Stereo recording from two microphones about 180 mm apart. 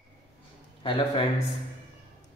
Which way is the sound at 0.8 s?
30° left (ahead or behind).